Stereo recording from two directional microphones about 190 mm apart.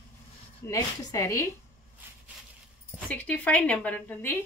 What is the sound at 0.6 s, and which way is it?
Speech, 20° left (ahead or behind).